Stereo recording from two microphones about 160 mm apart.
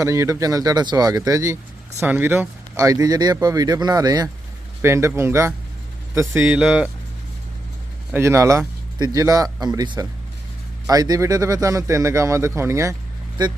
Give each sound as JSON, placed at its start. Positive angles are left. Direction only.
{"t": 0.0, "sound": "speech", "side_deg": -20}
{"t": 8.1, "sound": "speech", "side_deg": -15}